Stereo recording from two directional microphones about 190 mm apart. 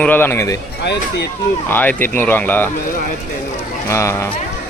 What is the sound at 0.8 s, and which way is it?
Speech, 65° left (ahead or behind).